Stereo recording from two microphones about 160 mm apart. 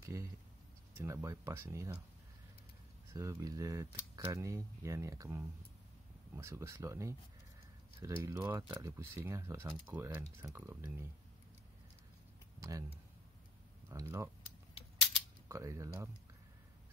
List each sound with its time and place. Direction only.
0.0 s a sound: 20° right (ahead or behind)
0.9 s speech: 15° right (ahead or behind)
3.1 s speech: 20° right (ahead or behind)
12.5 s speech: 20° right (ahead or behind)
13.8 s speech: 15° right (ahead or behind)
15.4 s speech: 20° right (ahead or behind)